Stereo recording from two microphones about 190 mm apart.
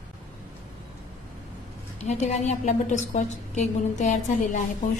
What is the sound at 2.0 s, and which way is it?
A woman's voice, 35° left (ahead or behind).